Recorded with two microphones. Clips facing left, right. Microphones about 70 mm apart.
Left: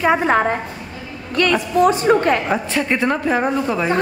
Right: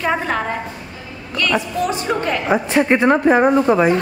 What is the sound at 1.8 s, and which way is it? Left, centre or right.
Speech, left.